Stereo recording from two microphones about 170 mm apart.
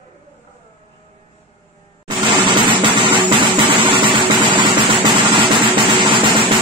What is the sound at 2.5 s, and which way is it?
Music, 30° right (ahead or behind).